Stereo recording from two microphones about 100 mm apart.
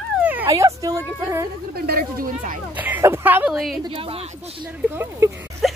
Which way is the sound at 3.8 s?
65° right (ahead or behind).